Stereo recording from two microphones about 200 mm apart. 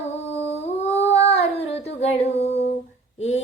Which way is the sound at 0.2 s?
30° left (ahead or behind).